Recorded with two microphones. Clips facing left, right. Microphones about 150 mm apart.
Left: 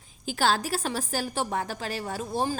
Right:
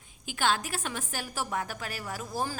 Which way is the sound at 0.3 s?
35° left (ahead or behind).